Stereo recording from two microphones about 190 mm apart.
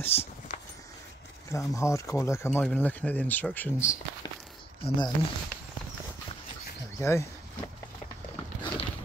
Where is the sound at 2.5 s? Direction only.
5° left (ahead or behind).